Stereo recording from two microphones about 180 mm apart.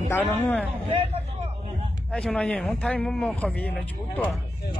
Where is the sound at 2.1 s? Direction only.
5° left (ahead or behind).